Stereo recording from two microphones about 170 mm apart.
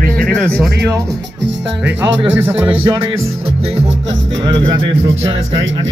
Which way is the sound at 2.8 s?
30° right (ahead or behind).